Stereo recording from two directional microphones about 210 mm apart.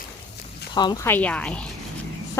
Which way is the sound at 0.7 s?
20° left (ahead or behind).